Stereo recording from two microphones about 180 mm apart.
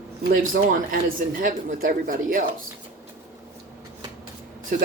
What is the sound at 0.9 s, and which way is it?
Speech, 50° right (ahead or behind).